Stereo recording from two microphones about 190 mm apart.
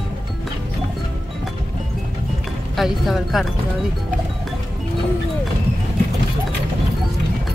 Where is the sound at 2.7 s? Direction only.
Centre (ahead or behind).